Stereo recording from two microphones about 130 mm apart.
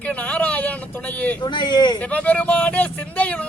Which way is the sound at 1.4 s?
35° left (ahead or behind).